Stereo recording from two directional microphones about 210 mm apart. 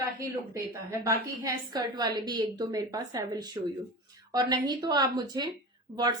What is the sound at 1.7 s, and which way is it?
A woman's voice, 20° right (ahead or behind).